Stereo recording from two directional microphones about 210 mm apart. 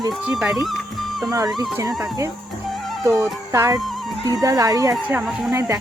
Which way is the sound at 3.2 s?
15° right (ahead or behind).